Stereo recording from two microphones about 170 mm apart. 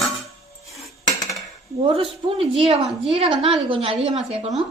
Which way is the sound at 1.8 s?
30° right (ahead or behind).